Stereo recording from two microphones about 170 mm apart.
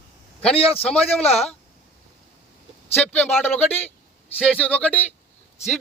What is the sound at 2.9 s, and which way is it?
A man's voice, 10° left (ahead or behind).